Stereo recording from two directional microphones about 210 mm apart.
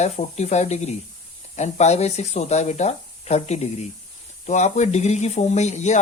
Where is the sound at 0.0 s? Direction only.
30° left (ahead or behind).